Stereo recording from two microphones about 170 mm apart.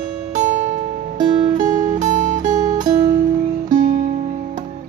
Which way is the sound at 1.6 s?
50° right (ahead or behind).